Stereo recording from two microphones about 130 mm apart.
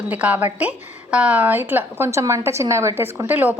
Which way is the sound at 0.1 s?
10° right (ahead or behind).